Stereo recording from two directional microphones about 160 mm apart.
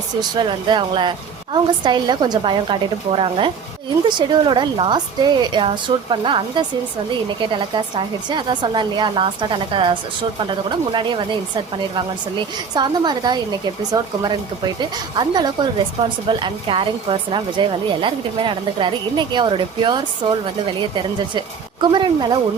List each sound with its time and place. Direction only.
0.2 s speech: 30° right (ahead or behind)